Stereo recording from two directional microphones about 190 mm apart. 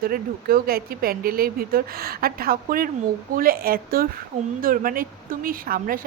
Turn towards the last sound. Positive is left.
turn(degrees=-50)  # may be behind; listen again after turning